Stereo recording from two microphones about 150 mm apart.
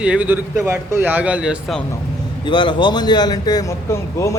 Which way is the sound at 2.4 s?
30° left (ahead or behind).